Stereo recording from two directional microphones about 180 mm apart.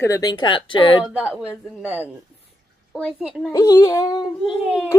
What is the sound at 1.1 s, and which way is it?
A woman's voice, 5° right (ahead or behind).